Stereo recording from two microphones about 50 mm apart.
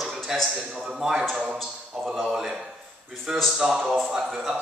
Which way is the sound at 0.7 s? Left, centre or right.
Centre.